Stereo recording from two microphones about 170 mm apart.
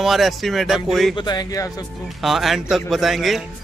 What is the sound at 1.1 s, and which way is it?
Speech, 25° left (ahead or behind).